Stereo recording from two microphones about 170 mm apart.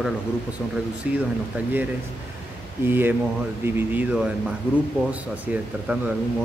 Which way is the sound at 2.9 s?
10° right (ahead or behind).